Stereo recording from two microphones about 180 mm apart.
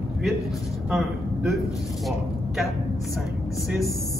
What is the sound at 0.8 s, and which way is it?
Speech, 5° right (ahead or behind).